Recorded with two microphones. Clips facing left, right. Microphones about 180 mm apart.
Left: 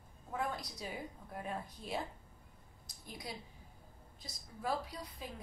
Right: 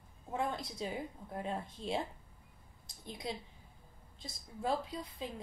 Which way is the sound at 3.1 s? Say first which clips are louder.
Right 5 dB; 25° right (ahead or behind).